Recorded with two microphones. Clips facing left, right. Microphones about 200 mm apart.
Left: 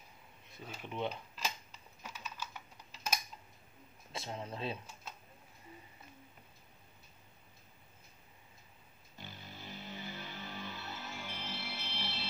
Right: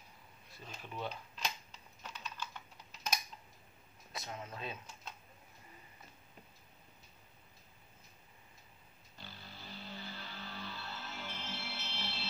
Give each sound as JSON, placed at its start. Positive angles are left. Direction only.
{"t": 0.8, "sound": "speech", "side_deg": 20}
{"t": 1.3, "sound": "typing", "side_deg": 5}
{"t": 4.1, "sound": "speech", "side_deg": 30}
{"t": 9.2, "sound": "music", "side_deg": 20}